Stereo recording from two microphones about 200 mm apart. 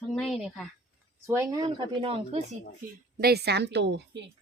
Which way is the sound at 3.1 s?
50° right (ahead or behind).